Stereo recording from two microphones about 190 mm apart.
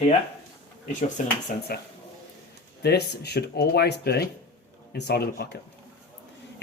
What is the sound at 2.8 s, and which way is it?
Speech, 60° left (ahead or behind).